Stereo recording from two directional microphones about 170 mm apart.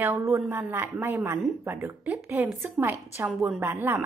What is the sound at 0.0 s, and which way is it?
A woman's voice, 15° right (ahead or behind).